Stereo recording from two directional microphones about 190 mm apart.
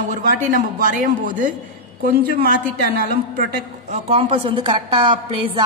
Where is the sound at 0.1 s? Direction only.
40° right (ahead or behind).